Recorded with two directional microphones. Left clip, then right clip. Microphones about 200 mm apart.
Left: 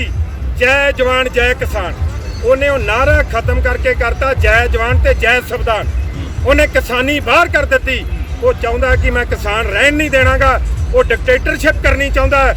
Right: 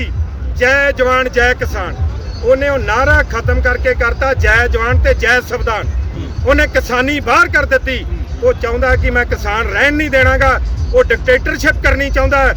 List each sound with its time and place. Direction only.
0.6 s speech: 15° right (ahead or behind)